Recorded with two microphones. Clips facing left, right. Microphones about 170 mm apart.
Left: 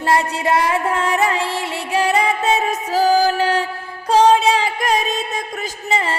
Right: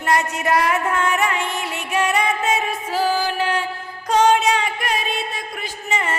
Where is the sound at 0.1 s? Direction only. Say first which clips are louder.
Left 2 dB; 25° left (ahead or behind).